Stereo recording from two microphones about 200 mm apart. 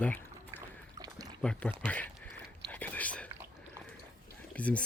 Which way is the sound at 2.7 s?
10° left (ahead or behind).